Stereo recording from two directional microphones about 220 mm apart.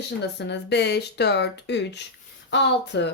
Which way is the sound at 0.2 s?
50° left (ahead or behind).